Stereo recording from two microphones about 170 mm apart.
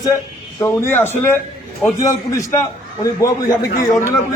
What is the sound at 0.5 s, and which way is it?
A man's voice, 15° left (ahead or behind).